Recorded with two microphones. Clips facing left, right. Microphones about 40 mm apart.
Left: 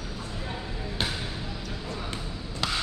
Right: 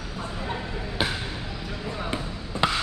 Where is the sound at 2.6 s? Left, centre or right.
Right.